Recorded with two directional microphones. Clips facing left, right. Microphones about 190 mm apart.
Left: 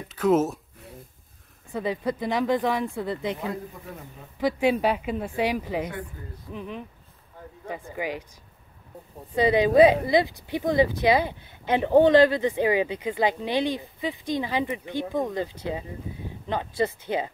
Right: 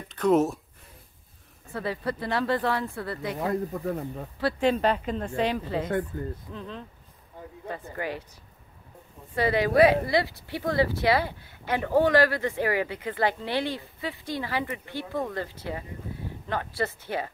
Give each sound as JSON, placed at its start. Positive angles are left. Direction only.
{"t": 0.1, "sound": "a sound", "side_deg": 5}
{"t": 1.7, "sound": "speech", "side_deg": 15}
{"t": 3.7, "sound": "a man's voice", "side_deg": -40}
{"t": 4.4, "sound": "speech", "side_deg": 15}
{"t": 9.3, "sound": "speech", "side_deg": 20}